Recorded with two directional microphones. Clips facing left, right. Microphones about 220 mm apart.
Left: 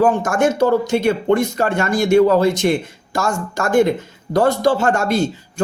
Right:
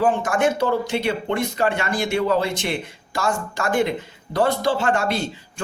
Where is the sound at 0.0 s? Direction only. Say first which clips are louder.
Left 4 dB; 45° left (ahead or behind).